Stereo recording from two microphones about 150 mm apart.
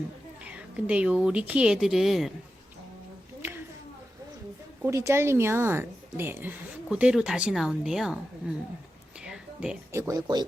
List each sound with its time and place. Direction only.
0.4 s speech: 10° right (ahead or behind)
4.8 s a woman's voice: 20° right (ahead or behind)
9.2 s music: 5° right (ahead or behind)
9.9 s speech: 20° right (ahead or behind)